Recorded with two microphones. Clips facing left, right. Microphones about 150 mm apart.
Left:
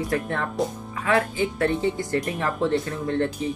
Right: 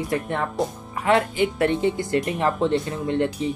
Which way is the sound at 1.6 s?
15° right (ahead or behind).